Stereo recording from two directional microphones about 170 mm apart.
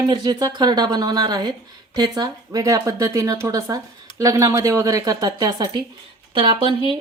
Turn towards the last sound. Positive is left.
turn(degrees=-30)  # may be behind; listen again after turning